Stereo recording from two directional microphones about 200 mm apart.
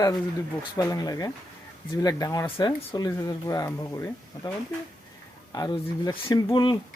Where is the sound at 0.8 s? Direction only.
15° left (ahead or behind).